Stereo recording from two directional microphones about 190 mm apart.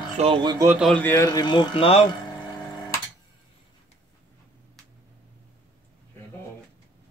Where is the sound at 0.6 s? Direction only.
5° right (ahead or behind).